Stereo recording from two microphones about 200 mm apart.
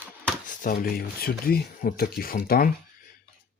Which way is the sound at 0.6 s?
45° left (ahead or behind).